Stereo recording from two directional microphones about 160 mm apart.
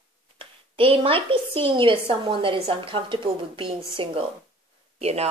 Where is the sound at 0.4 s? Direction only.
35° right (ahead or behind).